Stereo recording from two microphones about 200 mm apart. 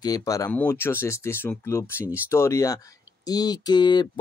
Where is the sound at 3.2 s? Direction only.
20° left (ahead or behind).